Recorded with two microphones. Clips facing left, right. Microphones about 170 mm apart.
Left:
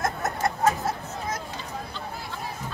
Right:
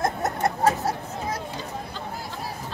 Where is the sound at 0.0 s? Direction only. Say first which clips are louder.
Right 2 dB; 25° right (ahead or behind).